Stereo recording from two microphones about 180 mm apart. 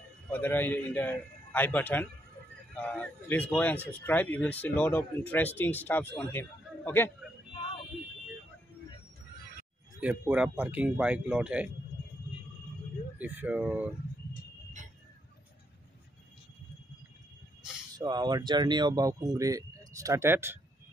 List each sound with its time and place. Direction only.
0.3 s speech: 10° left (ahead or behind)
9.9 s speech: 10° right (ahead or behind)
13.2 s speech: 10° right (ahead or behind)
17.9 s speech: 25° right (ahead or behind)